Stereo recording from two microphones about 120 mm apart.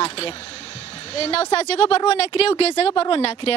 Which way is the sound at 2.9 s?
50° left (ahead or behind).